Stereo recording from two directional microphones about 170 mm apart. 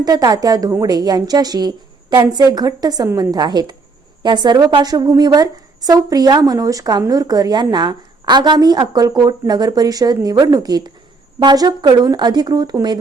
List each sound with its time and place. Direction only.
0.0 s a woman's voice: 25° right (ahead or behind)